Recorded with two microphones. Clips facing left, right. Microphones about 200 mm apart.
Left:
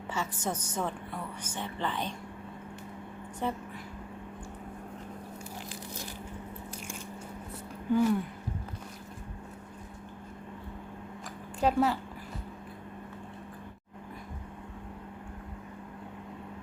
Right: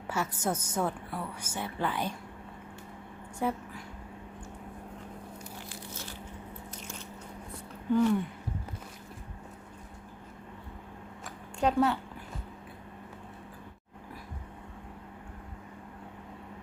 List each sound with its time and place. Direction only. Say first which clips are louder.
0.1 s a woman's voice: right 2 dB; 10° right (ahead or behind)
3.4 s a woman's voice: right 2 dB; 10° right (ahead or behind)
5.6 s a sound: left 2 dB; 15° left (ahead or behind)
7.9 s speech: right 1 dB; 5° left (ahead or behind)
11.6 s speech: even; centre (ahead or behind)